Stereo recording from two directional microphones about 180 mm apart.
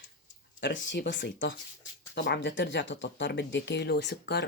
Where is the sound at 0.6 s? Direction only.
90° left.